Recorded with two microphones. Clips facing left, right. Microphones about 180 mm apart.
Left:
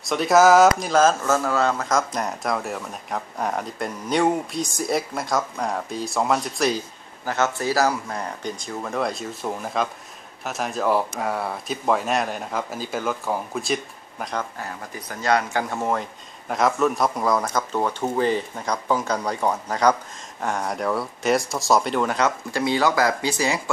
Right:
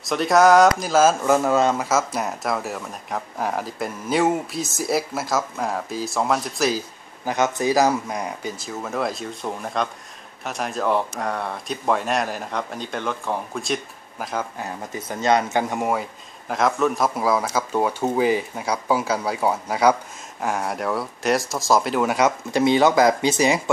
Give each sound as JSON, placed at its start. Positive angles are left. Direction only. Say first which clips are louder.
{"t": 0.0, "sound": "speech", "louder": "even", "side_deg": 0}
{"t": 1.9, "sound": "speech", "louder": "right 1 dB", "side_deg": -5}
{"t": 7.2, "sound": "speech", "louder": "right 2 dB", "side_deg": -15}
{"t": 14.6, "sound": "speech", "louder": "right 3 dB", "side_deg": -25}